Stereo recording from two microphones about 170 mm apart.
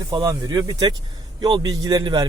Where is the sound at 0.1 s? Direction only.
20° right (ahead or behind).